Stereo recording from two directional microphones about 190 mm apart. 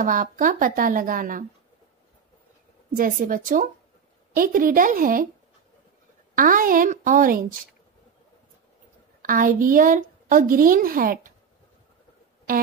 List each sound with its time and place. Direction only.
0.0 s a woman's voice: 45° right (ahead or behind)
3.0 s a woman's voice: 45° right (ahead or behind)
6.3 s a woman's voice: 45° right (ahead or behind)
9.2 s a woman's voice: 45° right (ahead or behind)